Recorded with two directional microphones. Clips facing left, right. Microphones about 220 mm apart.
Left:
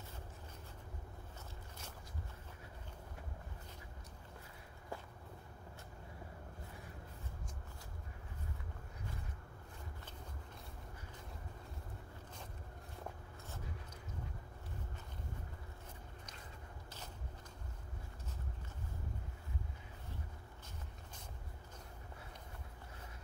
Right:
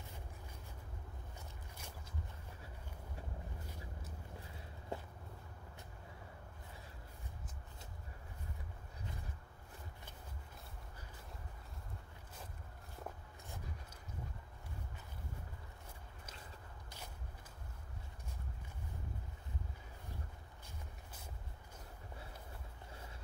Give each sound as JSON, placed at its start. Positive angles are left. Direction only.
{"t": 4.9, "sound": "walk", "side_deg": -20}